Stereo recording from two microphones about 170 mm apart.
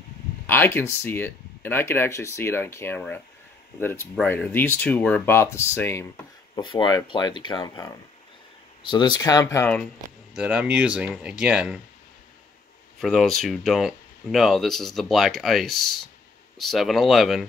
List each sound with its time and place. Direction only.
0.5 s speech: 10° left (ahead or behind)
6.5 s speech: 25° left (ahead or behind)
10.3 s speech: 5° right (ahead or behind)
13.0 s speech: centre (ahead or behind)